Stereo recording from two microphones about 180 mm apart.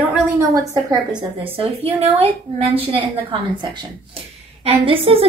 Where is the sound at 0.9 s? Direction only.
25° right (ahead or behind).